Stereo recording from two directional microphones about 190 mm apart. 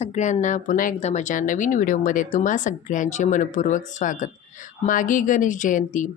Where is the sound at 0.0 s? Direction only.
40° left (ahead or behind).